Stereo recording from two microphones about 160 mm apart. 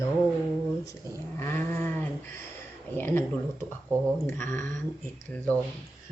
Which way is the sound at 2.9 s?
15° left (ahead or behind).